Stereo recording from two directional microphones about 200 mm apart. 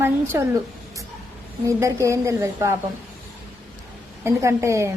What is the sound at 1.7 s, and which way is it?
A woman's voice, 15° right (ahead or behind).